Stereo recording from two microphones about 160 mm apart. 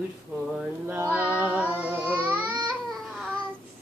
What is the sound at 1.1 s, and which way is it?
Child singing, 10° right (ahead or behind).